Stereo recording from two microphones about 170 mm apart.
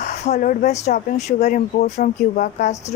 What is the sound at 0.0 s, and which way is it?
Speech, 45° left (ahead or behind).